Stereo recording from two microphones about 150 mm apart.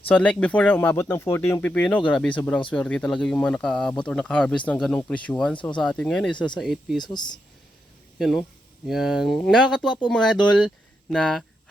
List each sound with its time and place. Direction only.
0.1 s speech: 10° left (ahead or behind)
6.3 s speech: 30° left (ahead or behind)
6.6 s speech: centre (ahead or behind)
7.0 s speech: 30° left (ahead or behind)
8.9 s speech: centre (ahead or behind)